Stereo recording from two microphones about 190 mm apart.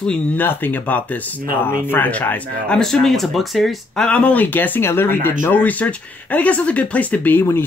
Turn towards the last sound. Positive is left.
turn(degrees=10)  # may be behind; listen again after turning